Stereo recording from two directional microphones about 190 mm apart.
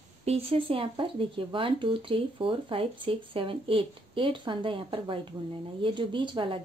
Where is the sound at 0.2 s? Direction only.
30° right (ahead or behind).